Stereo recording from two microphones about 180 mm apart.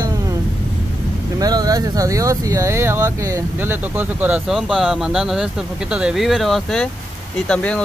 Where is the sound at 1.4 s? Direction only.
20° right (ahead or behind).